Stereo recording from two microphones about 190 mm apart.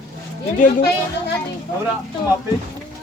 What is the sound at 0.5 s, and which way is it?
Speech, 45° left (ahead or behind).